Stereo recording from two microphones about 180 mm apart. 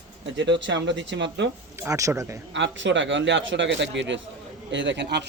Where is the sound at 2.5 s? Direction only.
90° right.